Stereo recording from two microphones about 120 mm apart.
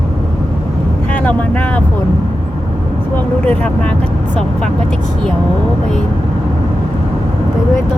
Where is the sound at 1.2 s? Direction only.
15° left (ahead or behind).